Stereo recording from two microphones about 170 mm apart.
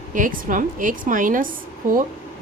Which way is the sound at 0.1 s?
50° right (ahead or behind).